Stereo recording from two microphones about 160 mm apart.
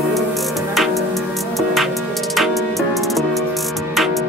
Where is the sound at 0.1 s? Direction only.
Centre (ahead or behind).